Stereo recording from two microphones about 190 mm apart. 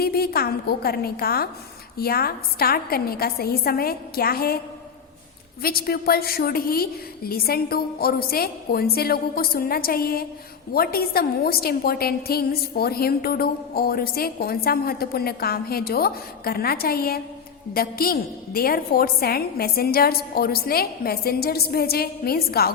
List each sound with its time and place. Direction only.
0.0 s a woman's voice: 55° left (ahead or behind)
5.6 s a woman's voice: 55° left (ahead or behind)